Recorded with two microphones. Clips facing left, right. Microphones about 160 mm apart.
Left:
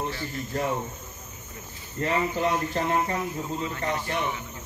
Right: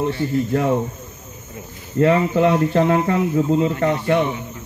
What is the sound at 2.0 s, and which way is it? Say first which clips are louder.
Speech: right 11 dB; 65° right (ahead or behind).